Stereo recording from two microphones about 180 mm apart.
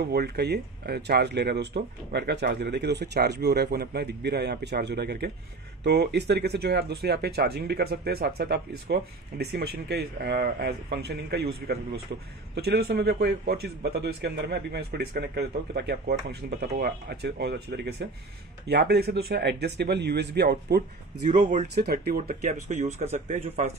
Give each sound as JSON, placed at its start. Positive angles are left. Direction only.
{"t": 0.0, "sound": "speech", "side_deg": -65}
{"t": 21.2, "sound": "speech", "side_deg": -45}
{"t": 21.7, "sound": "speech", "side_deg": -60}